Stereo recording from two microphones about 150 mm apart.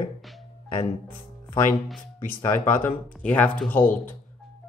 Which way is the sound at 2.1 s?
15° left (ahead or behind).